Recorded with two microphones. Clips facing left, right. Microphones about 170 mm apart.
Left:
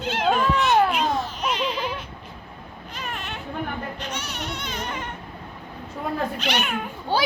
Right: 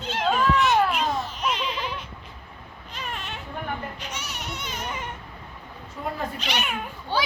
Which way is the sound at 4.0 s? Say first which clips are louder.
Left 4 dB; 5° right (ahead or behind).